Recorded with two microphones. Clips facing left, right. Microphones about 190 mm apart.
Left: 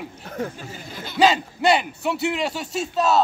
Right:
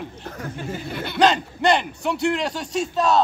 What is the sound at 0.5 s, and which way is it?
Speech, 60° right (ahead or behind).